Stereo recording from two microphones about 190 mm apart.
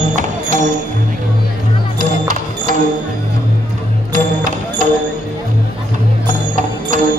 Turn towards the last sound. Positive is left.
turn(degrees=-45)  # may be behind; listen again after turning